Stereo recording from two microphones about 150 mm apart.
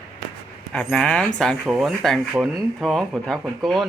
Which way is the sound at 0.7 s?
5° left (ahead or behind).